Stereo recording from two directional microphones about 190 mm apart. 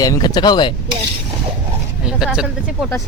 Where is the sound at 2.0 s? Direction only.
5° right (ahead or behind).